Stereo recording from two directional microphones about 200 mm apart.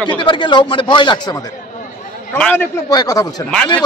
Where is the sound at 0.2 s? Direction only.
25° left (ahead or behind).